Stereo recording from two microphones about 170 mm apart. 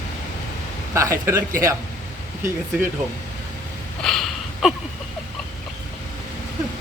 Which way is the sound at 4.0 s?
Centre (ahead or behind).